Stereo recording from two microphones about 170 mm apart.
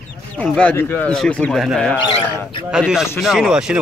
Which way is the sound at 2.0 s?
30° left (ahead or behind).